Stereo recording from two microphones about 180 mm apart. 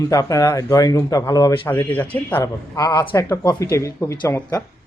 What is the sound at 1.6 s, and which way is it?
Speech, 10° left (ahead or behind).